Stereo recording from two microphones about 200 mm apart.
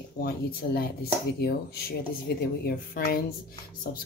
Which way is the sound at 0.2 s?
50° left (ahead or behind).